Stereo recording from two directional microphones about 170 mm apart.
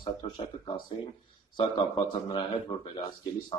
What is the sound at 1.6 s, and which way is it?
Speech, 25° left (ahead or behind).